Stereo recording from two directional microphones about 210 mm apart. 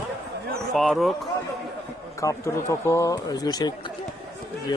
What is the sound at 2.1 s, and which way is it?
A man's voice, 15° left (ahead or behind).